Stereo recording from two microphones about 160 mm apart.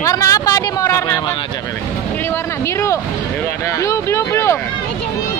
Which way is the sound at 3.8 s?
15° left (ahead or behind).